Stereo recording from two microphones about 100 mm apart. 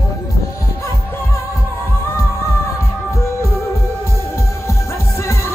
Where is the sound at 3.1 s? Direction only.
30° left (ahead or behind).